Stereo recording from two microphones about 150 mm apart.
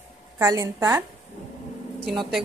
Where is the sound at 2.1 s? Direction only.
Centre (ahead or behind).